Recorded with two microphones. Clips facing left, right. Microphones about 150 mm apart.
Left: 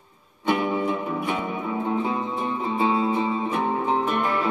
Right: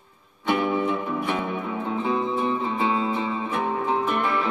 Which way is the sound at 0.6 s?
10° left (ahead or behind).